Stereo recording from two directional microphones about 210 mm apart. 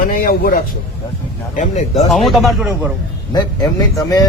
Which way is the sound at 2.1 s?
Centre (ahead or behind).